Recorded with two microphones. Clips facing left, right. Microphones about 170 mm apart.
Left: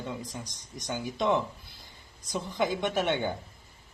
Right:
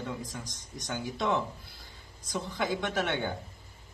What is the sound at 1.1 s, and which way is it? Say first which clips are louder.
Speech: left 3 dB; 20° left (ahead or behind).